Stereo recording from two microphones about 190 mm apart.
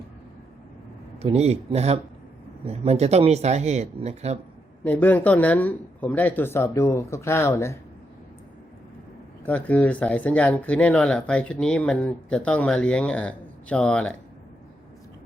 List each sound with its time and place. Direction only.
1.2 s speech: 35° right (ahead or behind)
4.8 s speech: 10° left (ahead or behind)
9.5 s speech: 5° left (ahead or behind)